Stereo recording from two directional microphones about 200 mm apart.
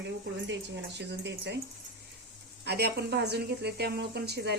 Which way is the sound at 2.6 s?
55° right (ahead or behind).